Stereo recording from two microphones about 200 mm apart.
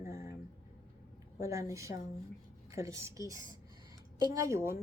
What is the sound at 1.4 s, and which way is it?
A woman's voice, 15° right (ahead or behind).